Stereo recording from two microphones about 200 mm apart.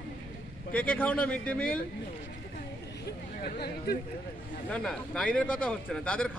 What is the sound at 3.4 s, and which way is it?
Speech, 50° left (ahead or behind).